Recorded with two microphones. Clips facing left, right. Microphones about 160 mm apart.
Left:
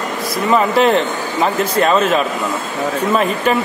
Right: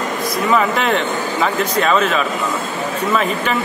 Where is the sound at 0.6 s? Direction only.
35° left (ahead or behind).